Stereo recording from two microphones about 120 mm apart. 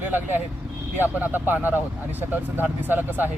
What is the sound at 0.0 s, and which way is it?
Speech, 15° right (ahead or behind).